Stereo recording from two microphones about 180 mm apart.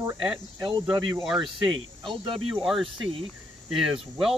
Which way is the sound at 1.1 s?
Centre (ahead or behind).